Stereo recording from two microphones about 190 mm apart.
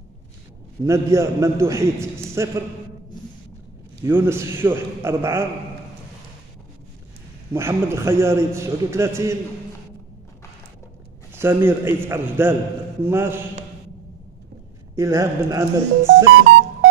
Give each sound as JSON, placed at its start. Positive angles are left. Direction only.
{"t": 0.8, "sound": "a man's voice", "side_deg": -15}
{"t": 4.0, "sound": "a man's voice", "side_deg": -10}
{"t": 7.5, "sound": "a man's voice", "side_deg": -15}
{"t": 11.3, "sound": "a man's voice", "side_deg": -10}
{"t": 15.0, "sound": "a man's voice", "side_deg": -15}